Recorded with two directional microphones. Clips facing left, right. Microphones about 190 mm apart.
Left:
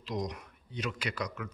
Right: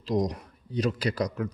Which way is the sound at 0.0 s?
35° right (ahead or behind).